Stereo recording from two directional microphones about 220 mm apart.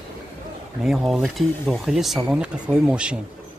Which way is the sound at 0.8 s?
Centre (ahead or behind).